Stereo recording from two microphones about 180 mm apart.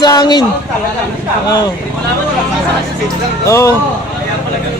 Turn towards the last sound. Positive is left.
turn(degrees=15)  # may be behind; listen again after turning